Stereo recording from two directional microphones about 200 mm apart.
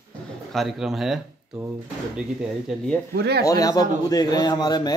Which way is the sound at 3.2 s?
50° right (ahead or behind).